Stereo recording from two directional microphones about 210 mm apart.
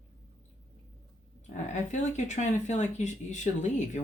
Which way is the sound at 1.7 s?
35° left (ahead or behind).